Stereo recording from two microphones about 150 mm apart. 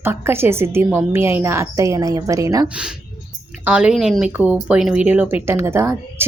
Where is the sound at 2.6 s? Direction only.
5° right (ahead or behind).